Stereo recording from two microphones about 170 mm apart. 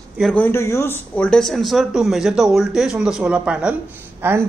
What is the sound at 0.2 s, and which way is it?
Speech, 10° left (ahead or behind).